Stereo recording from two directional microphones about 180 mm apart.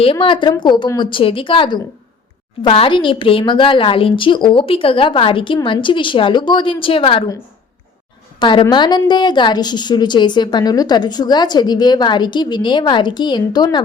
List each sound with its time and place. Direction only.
0.0 s a woman's voice: 30° left (ahead or behind)
8.4 s a woman's voice: 25° left (ahead or behind)